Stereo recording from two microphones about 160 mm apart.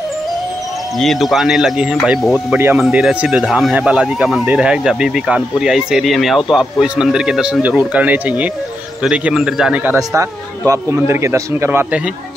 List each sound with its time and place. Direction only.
0.9 s speech: centre (ahead or behind)
2.5 s a man's voice: 10° right (ahead or behind)
10.7 s a man's voice: 15° right (ahead or behind)